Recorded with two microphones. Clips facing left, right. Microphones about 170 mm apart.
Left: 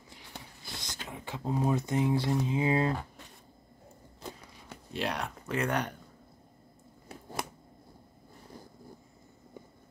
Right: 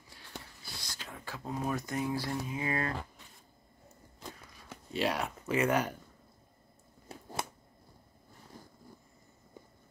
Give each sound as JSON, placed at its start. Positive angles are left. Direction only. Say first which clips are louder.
{"t": 0.1, "sound": "a sound", "louder": "even", "side_deg": 15}
{"t": 1.0, "sound": "speech", "louder": "left 6 dB", "side_deg": 20}
{"t": 4.9, "sound": "speech", "louder": "right 2 dB", "side_deg": 0}